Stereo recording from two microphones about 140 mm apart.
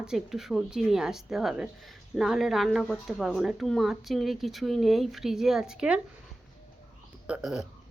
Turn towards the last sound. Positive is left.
turn(degrees=-5)  # may be behind; listen again after turning